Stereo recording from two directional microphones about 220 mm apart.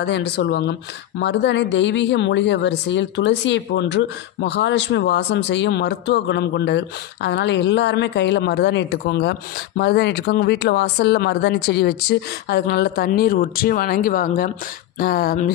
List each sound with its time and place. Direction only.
0.0 s speech: 50° left (ahead or behind)